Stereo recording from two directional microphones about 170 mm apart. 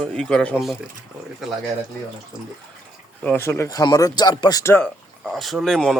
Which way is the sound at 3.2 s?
15° left (ahead or behind).